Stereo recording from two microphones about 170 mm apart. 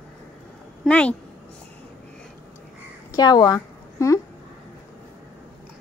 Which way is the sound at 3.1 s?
25° left (ahead or behind).